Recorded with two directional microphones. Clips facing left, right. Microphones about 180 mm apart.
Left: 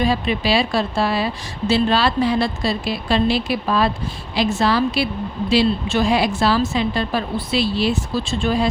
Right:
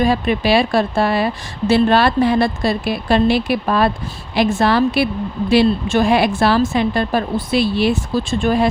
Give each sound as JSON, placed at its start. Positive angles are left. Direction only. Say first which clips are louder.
{"t": 0.0, "sound": "a woman's voice", "louder": "right 3 dB", "side_deg": -50}